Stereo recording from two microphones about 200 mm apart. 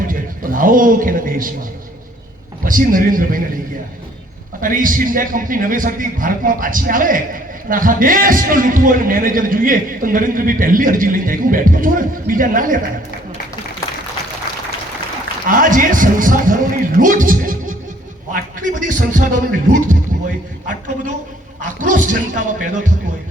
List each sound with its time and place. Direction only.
0.0 s a man's voice: 45° right (ahead or behind)
2.6 s a man's voice: 45° right (ahead or behind)
4.6 s a man's voice: 45° right (ahead or behind)
15.4 s a man's voice: 45° right (ahead or behind)